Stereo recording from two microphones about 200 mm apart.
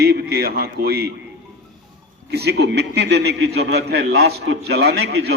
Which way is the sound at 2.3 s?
55° right (ahead or behind).